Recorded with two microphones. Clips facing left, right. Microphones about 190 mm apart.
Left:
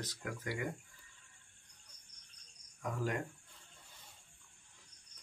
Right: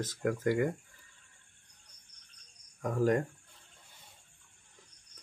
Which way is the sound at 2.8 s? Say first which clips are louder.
Right 9 dB; 45° right (ahead or behind).